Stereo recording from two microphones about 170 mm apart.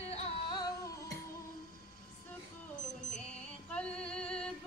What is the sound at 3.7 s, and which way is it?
Female singing, 5° left (ahead or behind).